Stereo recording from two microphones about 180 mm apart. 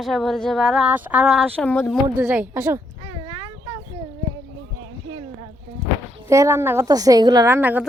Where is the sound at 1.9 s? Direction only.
5° right (ahead or behind).